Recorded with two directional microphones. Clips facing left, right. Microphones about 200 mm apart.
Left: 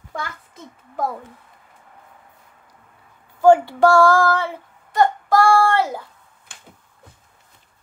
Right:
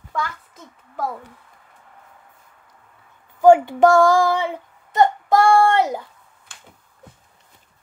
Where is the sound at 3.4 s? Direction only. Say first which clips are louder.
Right 1 dB; 15° right (ahead or behind).